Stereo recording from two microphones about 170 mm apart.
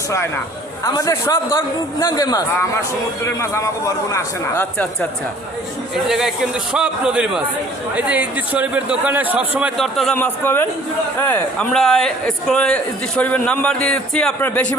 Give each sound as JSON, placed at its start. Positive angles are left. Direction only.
{"t": 0.9, "sound": "a man's voice", "side_deg": 20}
{"t": 6.1, "sound": "a man's voice", "side_deg": 0}
{"t": 10.2, "sound": "a man's voice", "side_deg": 10}